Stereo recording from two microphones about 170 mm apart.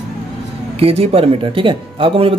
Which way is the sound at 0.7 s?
35° right (ahead or behind).